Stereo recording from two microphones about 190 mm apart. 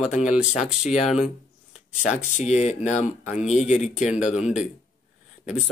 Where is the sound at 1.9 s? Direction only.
40° left (ahead or behind).